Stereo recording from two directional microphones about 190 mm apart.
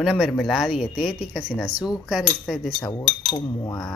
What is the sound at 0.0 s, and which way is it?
Speech, centre (ahead or behind).